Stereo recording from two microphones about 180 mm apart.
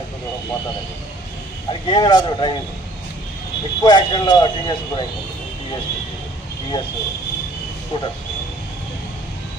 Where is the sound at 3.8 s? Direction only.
25° left (ahead or behind).